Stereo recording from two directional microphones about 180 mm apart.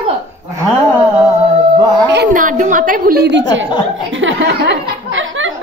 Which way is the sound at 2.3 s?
45° right (ahead or behind).